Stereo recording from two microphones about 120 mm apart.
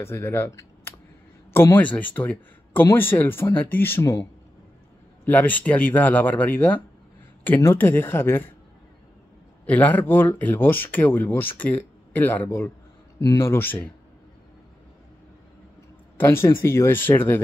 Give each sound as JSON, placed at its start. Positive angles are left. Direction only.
{"t": 0.0, "sound": "speech", "side_deg": 20}
{"t": 5.2, "sound": "speech", "side_deg": 15}
{"t": 9.7, "sound": "speech", "side_deg": 15}
{"t": 16.2, "sound": "speech", "side_deg": 20}